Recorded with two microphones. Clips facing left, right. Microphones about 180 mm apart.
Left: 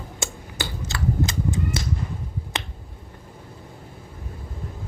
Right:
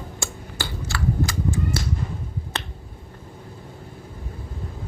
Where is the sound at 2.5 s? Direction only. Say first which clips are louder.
Left 1 dB; 15° left (ahead or behind).